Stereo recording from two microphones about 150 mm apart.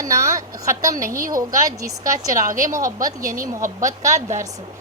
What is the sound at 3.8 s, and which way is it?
Speech, 20° right (ahead or behind).